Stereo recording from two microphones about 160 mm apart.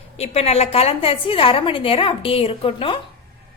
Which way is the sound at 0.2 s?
40° left (ahead or behind).